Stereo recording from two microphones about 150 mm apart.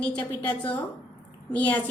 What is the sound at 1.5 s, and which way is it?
Speech, 10° left (ahead or behind).